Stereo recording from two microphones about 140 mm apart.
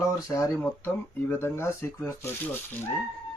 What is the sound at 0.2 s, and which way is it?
Speech, 25° left (ahead or behind).